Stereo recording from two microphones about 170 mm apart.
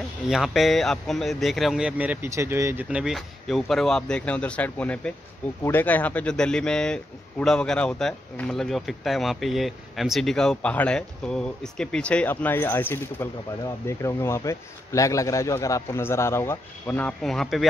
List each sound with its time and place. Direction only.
0.3 s speech: centre (ahead or behind)